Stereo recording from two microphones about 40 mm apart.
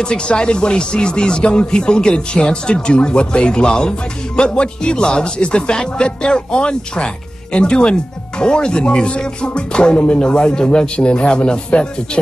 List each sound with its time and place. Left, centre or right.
0.3 s speech: left